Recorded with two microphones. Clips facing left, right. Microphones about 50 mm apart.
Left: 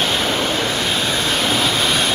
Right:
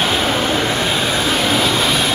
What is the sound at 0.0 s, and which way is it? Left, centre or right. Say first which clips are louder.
Vehicle: right 2 dB; centre.